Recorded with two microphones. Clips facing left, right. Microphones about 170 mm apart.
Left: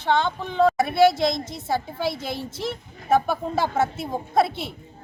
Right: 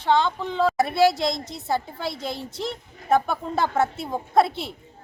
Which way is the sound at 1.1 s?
Centre (ahead or behind).